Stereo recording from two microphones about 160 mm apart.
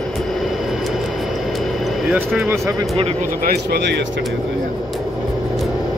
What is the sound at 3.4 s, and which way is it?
Speech, 85° right.